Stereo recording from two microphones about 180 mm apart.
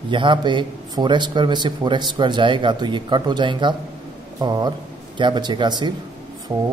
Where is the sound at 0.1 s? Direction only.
25° right (ahead or behind).